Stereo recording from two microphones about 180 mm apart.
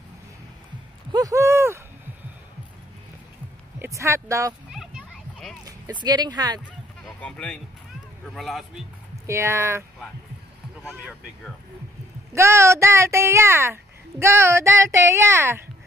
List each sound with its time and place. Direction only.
1.1 s a sound: 20° right (ahead or behind)
3.8 s speech: 15° right (ahead or behind)
4.6 s children playing: 5° right (ahead or behind)
5.7 s speech: 25° right (ahead or behind)
7.2 s speech: 5° left (ahead or behind)
9.1 s speech: 15° right (ahead or behind)
12.3 s speech: 15° right (ahead or behind)